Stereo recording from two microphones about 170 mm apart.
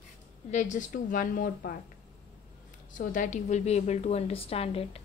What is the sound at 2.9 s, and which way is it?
A woman's voice, 50° left (ahead or behind).